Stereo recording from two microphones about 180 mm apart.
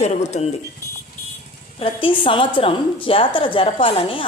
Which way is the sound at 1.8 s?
30° left (ahead or behind).